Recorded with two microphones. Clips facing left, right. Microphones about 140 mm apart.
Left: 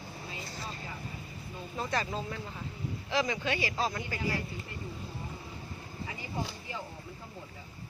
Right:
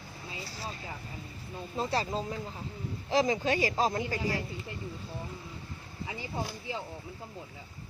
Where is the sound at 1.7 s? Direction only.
30° right (ahead or behind).